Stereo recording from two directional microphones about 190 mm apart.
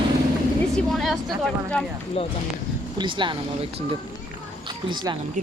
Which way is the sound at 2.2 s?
30° left (ahead or behind).